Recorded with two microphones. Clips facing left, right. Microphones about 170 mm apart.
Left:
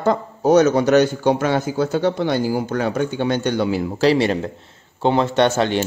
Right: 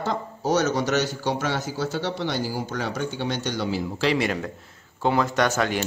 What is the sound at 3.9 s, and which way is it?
Speech, 35° left (ahead or behind).